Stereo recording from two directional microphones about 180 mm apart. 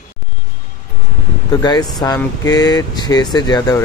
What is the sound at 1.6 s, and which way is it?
Speech, 20° left (ahead or behind).